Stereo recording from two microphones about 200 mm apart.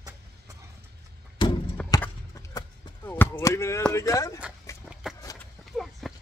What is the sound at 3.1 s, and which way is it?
Chop, 10° left (ahead or behind).